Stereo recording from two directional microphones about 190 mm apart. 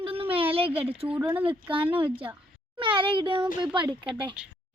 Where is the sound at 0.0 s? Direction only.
30° right (ahead or behind).